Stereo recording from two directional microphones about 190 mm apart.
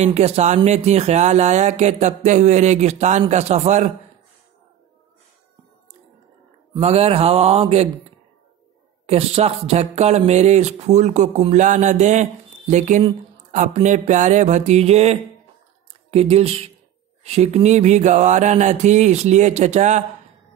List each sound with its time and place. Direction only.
0.0 s speech: 35° right (ahead or behind)
6.7 s speech: 35° right (ahead or behind)
9.0 s speech: 35° right (ahead or behind)